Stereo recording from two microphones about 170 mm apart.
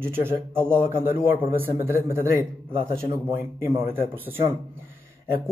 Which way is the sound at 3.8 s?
15° right (ahead or behind).